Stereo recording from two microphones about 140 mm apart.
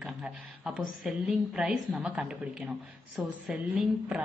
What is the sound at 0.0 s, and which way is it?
A woman's voice, 5° right (ahead or behind).